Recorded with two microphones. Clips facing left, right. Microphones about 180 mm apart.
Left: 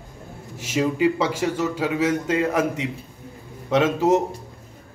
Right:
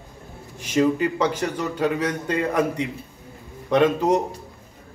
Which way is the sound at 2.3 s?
90° left.